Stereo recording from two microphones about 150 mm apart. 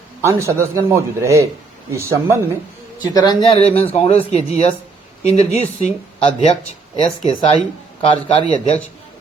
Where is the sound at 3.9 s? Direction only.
45° left (ahead or behind).